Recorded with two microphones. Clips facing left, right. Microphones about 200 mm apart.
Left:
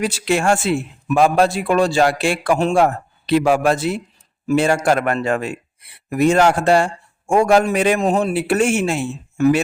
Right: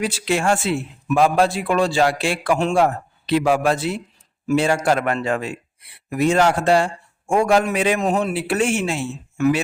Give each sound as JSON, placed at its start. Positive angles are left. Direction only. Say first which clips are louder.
{"t": 0.0, "sound": "a man's voice", "louder": "left 2 dB", "side_deg": 45}
{"t": 7.9, "sound": "a man's voice", "louder": "left 3 dB", "side_deg": 30}
{"t": 8.3, "sound": "a man's voice", "louder": "left 3 dB", "side_deg": 45}